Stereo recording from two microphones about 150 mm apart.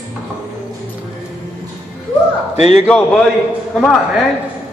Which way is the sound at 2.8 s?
5° left (ahead or behind).